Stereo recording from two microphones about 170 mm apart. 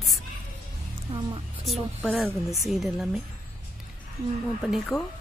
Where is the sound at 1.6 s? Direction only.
Centre (ahead or behind).